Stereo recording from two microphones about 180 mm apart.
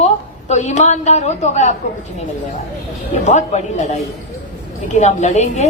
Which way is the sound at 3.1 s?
40° left (ahead or behind).